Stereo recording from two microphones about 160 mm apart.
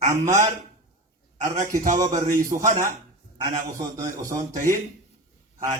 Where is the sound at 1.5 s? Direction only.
55° right (ahead or behind).